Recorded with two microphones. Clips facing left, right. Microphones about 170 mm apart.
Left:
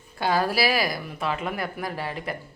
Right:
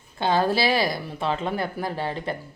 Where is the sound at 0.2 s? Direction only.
25° right (ahead or behind).